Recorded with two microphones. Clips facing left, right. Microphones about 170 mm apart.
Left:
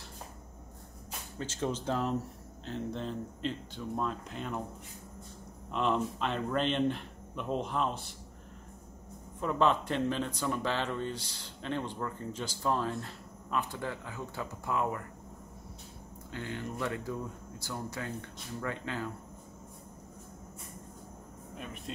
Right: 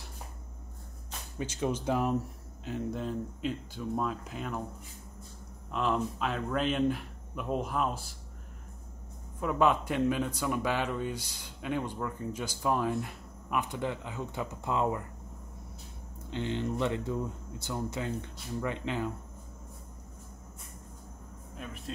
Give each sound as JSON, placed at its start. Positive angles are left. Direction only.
{"t": 1.4, "sound": "speech", "side_deg": -15}
{"t": 5.7, "sound": "speech", "side_deg": 0}
{"t": 9.4, "sound": "speech", "side_deg": -10}
{"t": 16.3, "sound": "speech", "side_deg": -25}
{"t": 21.9, "sound": "speech", "side_deg": 0}